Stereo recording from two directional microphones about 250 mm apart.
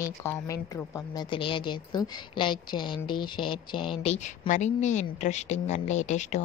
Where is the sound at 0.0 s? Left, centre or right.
Centre.